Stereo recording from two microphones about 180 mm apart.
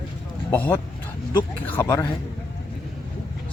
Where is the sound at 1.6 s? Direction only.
10° left (ahead or behind).